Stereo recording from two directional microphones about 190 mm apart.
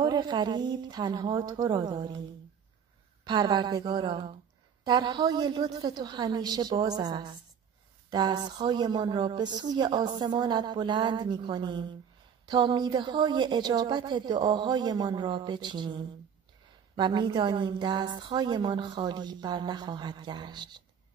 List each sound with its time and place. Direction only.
0.0 s a woman's voice: 25° right (ahead or behind)
3.3 s a woman's voice: 25° right (ahead or behind)